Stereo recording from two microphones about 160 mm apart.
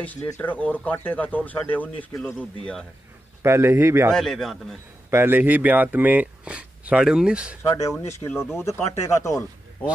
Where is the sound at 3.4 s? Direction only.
15° right (ahead or behind).